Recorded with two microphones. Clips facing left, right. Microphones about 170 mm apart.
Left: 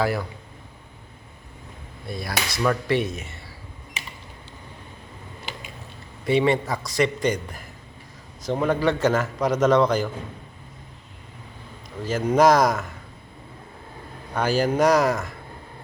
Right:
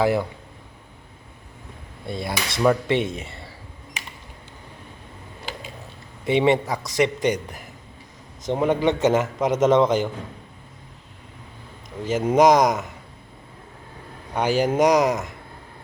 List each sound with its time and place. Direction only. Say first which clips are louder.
0.0 s a man's voice: right 4 dB; 20° right (ahead or behind)
2.0 s a man's voice: right 1 dB; 25° right (ahead or behind)
6.2 s a man's voice: right 1 dB; 20° right (ahead or behind)
12.0 s a man's voice: right 1 dB; 20° right (ahead or behind)
14.3 s a man's voice: right 1 dB; 20° right (ahead or behind)